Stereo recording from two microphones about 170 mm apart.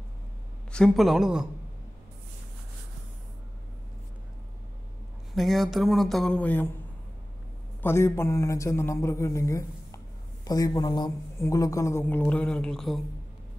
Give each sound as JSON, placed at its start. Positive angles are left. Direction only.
{"t": 0.7, "sound": "speech", "side_deg": 5}
{"t": 5.3, "sound": "speech", "side_deg": 0}
{"t": 7.8, "sound": "a man's voice", "side_deg": 15}